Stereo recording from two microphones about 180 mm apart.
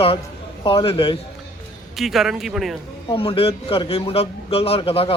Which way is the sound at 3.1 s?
30° left (ahead or behind).